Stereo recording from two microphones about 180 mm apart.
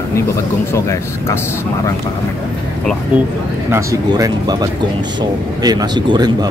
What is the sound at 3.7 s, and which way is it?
Speech, 20° right (ahead or behind).